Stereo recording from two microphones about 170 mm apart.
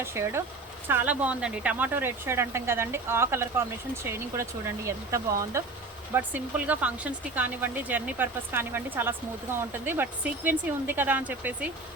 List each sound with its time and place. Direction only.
0.0 s speech: 15° right (ahead or behind)